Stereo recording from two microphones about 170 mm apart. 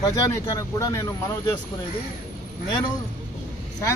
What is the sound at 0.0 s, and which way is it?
Speech, 20° left (ahead or behind).